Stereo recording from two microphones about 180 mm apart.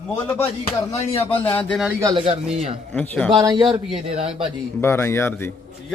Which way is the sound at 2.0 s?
30° right (ahead or behind).